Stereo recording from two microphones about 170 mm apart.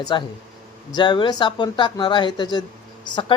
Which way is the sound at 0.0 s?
25° left (ahead or behind).